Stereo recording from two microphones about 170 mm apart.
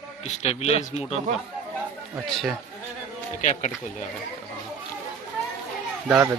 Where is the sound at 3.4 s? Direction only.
45° left (ahead or behind).